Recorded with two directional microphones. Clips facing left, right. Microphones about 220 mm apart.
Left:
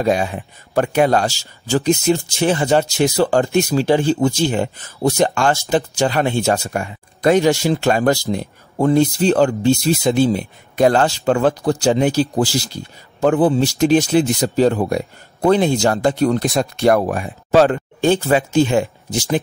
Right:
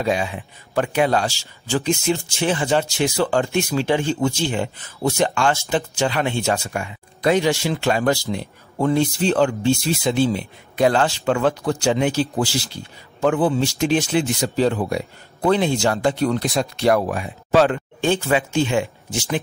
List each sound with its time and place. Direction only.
0.0 s speech: 45° left (ahead or behind)